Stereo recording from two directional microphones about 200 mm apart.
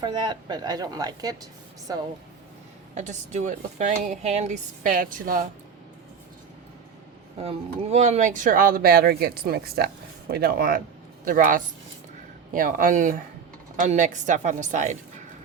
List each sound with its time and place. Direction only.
0.0 s a woman's voice: 20° right (ahead or behind)
2.9 s speech: 35° right (ahead or behind)
7.3 s speech: 30° right (ahead or behind)